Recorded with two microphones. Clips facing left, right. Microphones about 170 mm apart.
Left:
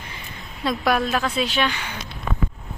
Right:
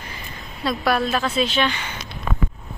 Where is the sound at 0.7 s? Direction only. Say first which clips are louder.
Even; 15° left (ahead or behind).